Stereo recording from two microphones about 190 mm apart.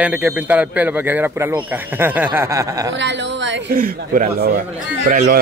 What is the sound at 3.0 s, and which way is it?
Speech, 70° right (ahead or behind).